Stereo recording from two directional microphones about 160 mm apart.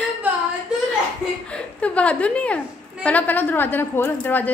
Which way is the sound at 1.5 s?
10° left (ahead or behind).